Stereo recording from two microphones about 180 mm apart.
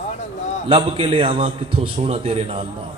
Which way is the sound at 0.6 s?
30° right (ahead or behind).